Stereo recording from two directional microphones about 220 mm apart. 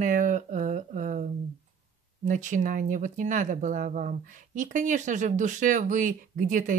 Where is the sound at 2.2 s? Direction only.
35° right (ahead or behind).